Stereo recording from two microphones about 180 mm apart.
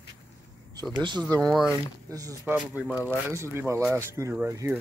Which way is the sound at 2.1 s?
20° right (ahead or behind).